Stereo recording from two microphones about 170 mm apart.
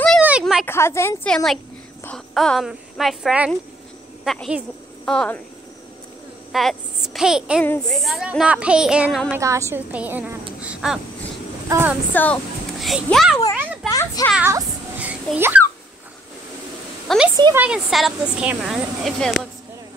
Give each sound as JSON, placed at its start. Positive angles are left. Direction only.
{"t": 0.2, "sound": "a sound", "side_deg": -5}
{"t": 0.7, "sound": "a woman's voice", "side_deg": 15}
{"t": 1.3, "sound": "speech", "side_deg": 0}
{"t": 6.5, "sound": "a child's voice", "side_deg": 0}
{"t": 7.6, "sound": "a woman's voice", "side_deg": 10}
{"t": 7.9, "sound": "speech", "side_deg": 0}
{"t": 9.3, "sound": "a woman's voice", "side_deg": -15}
{"t": 12.1, "sound": "a woman's voice", "side_deg": 10}
{"t": 12.8, "sound": "speech", "side_deg": 0}
{"t": 13.8, "sound": "children playing", "side_deg": 20}
{"t": 14.3, "sound": "babbling", "side_deg": -10}
{"t": 17.1, "sound": "speech", "side_deg": 0}